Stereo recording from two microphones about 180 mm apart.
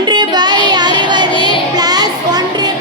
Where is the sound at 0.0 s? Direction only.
25° right (ahead or behind).